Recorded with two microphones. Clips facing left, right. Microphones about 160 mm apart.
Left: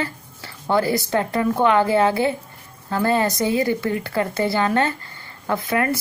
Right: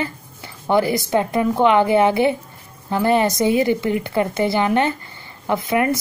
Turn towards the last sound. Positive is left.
turn(degrees=-20)  # may be behind; listen again after turning